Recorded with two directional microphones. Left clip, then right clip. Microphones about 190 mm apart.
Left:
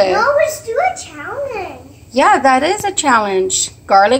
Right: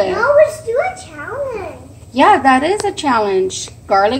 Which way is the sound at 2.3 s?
5° left (ahead or behind).